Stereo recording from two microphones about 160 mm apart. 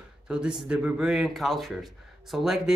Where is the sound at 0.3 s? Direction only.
5° right (ahead or behind).